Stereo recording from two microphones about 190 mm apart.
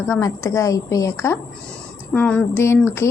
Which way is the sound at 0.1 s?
15° left (ahead or behind).